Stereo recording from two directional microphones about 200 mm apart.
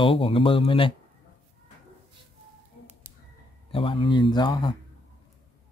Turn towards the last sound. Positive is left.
turn(degrees=20)  # may be behind; listen again after turning